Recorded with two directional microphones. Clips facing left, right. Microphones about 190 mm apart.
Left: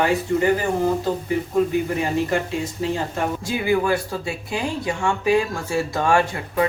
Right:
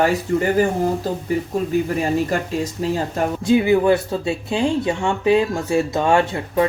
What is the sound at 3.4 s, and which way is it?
Speech, 20° right (ahead or behind).